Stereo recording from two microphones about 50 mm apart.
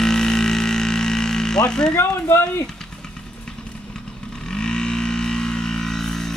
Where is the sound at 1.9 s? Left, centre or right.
Left.